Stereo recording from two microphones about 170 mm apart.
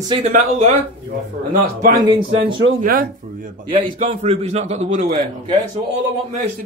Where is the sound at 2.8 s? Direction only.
55° right (ahead or behind).